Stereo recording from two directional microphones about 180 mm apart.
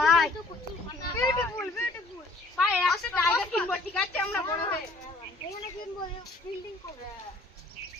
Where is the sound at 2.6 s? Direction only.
Centre (ahead or behind).